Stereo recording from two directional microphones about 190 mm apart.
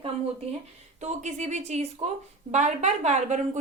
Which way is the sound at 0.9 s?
35° right (ahead or behind).